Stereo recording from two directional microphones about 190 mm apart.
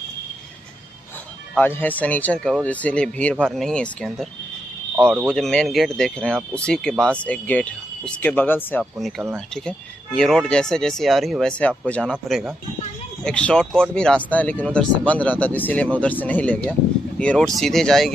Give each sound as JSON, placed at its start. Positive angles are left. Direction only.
{"t": 1.6, "sound": "speech", "side_deg": 10}
{"t": 4.9, "sound": "speech", "side_deg": -10}
{"t": 5.2, "sound": "speech", "side_deg": 0}